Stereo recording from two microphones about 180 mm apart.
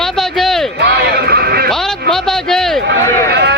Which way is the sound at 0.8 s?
60° right (ahead or behind).